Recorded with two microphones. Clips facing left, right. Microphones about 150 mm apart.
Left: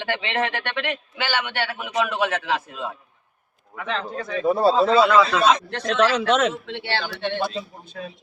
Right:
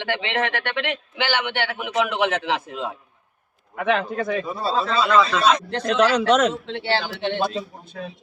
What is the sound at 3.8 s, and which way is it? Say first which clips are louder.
Speech: right 6 dB; 65° right (ahead or behind).